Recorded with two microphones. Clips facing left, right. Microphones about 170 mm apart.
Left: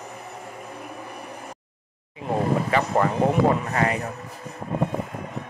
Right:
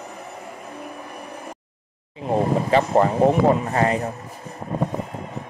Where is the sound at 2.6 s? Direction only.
30° right (ahead or behind).